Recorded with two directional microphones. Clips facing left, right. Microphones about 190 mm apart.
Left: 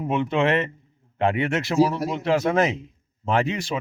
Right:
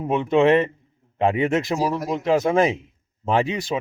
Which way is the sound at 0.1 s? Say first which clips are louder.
Right 4 dB; 35° right (ahead or behind).